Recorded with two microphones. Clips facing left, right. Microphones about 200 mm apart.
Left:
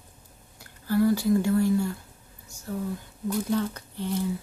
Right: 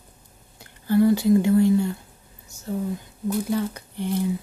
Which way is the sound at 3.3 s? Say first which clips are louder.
Right 2 dB; 10° right (ahead or behind).